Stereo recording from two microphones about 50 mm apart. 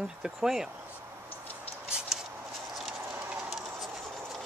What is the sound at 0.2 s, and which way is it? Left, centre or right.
Speech, centre.